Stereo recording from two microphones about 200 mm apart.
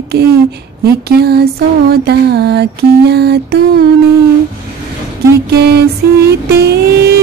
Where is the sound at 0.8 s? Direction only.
55° right (ahead or behind).